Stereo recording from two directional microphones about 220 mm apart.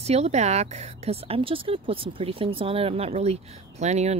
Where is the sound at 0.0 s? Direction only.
30° right (ahead or behind).